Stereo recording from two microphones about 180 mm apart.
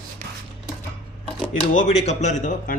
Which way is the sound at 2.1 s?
40° left (ahead or behind).